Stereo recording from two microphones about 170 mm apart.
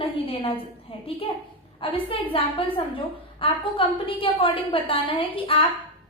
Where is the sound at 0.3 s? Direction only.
35° left (ahead or behind).